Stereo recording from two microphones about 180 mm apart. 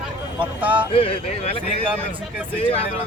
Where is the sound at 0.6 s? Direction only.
10° right (ahead or behind).